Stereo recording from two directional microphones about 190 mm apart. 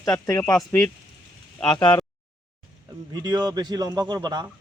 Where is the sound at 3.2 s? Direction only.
20° right (ahead or behind).